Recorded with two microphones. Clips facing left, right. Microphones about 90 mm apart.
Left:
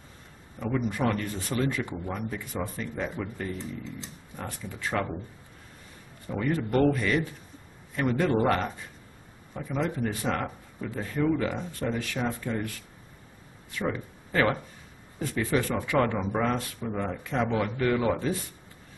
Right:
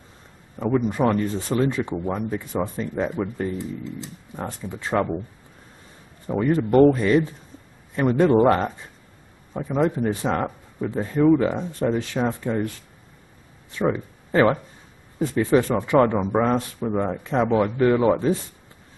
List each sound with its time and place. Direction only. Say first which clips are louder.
0.6 s speech: right 7 dB; 25° right (ahead or behind)
3.5 s speech: right 6 dB; 5° right (ahead or behind)
4.4 s speech: right 5 dB; 25° right (ahead or behind)
6.2 s a man's voice: right 7 dB; 25° right (ahead or behind)